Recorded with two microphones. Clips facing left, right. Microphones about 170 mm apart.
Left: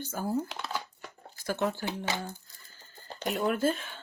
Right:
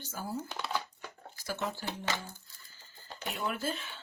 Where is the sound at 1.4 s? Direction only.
60° left (ahead or behind).